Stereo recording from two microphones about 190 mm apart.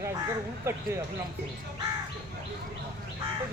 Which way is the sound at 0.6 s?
15° right (ahead or behind).